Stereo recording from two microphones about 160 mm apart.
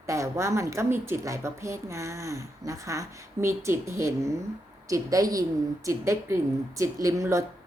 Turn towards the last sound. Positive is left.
turn(degrees=-20)  # may be behind; listen again after turning